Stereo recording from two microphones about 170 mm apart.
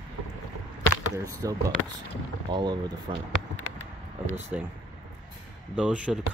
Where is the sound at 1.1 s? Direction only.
20° right (ahead or behind).